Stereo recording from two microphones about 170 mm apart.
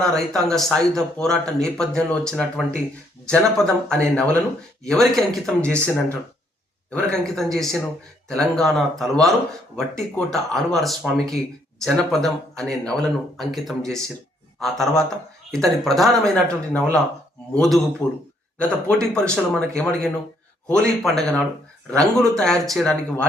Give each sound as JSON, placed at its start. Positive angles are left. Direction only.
{"t": 0.0, "sound": "a man's voice", "side_deg": 5}
{"t": 18.0, "sound": "a man's voice", "side_deg": 20}
{"t": 18.6, "sound": "a man's voice", "side_deg": 5}